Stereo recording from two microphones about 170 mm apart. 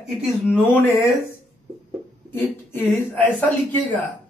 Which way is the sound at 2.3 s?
15° left (ahead or behind).